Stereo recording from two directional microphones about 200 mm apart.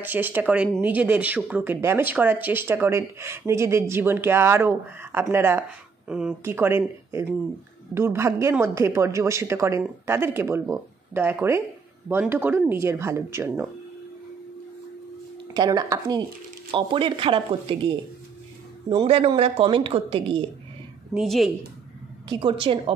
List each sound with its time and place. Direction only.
0.0 s speech: 10° right (ahead or behind)
15.5 s speech: 20° right (ahead or behind)
21.1 s a woman's voice: centre (ahead or behind)
22.3 s speech: 25° right (ahead or behind)